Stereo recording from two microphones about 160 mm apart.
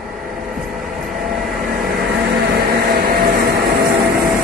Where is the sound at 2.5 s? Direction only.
70° right (ahead or behind).